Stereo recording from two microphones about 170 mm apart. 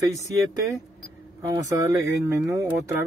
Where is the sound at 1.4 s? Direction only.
20° right (ahead or behind).